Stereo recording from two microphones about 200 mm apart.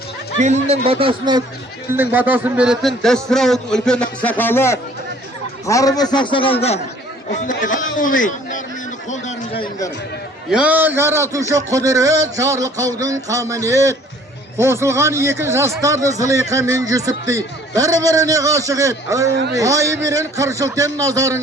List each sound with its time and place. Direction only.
0.3 s speech: 35° right (ahead or behind)
2.0 s a man's voice: 10° right (ahead or behind); by 8.6 s 40° left (ahead or behind)
9.0 s a sound: 35° left (ahead or behind)
10.5 s speech: 5° right (ahead or behind)